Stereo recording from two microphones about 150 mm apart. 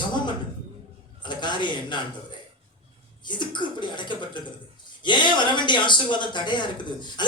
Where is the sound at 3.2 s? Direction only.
30° left (ahead or behind).